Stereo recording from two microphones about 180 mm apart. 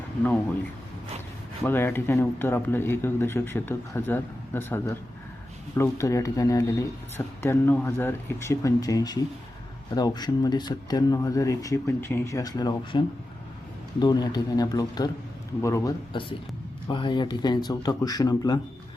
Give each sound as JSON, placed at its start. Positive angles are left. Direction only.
{"t": 1.6, "sound": "speech", "side_deg": 10}
{"t": 14.0, "sound": "speech", "side_deg": 25}
{"t": 16.1, "sound": "speech", "side_deg": 25}